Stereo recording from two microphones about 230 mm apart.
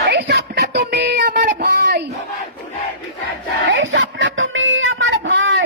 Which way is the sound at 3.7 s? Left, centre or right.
Right.